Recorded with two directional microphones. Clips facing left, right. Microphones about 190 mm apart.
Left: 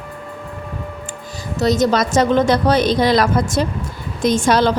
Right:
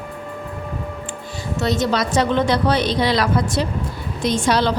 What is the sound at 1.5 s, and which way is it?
Speech, 40° left (ahead or behind).